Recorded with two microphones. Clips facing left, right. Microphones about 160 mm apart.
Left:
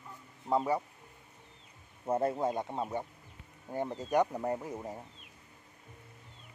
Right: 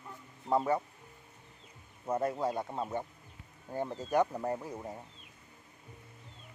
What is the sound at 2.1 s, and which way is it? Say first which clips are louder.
Speech: left 2 dB; 25° left (ahead or behind).